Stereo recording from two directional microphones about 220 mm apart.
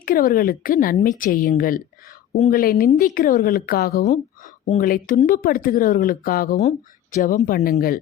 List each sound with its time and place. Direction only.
0.0 s speech: 40° left (ahead or behind)